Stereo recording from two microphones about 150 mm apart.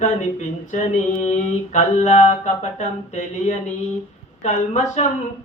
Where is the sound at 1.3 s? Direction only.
50° left (ahead or behind).